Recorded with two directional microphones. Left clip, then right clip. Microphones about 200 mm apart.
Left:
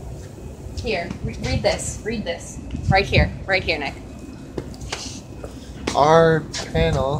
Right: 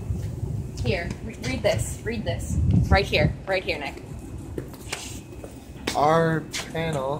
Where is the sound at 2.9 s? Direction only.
20° left (ahead or behind).